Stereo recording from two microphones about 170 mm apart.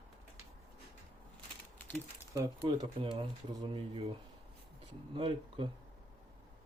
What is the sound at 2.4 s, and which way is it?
Speech, 25° right (ahead or behind).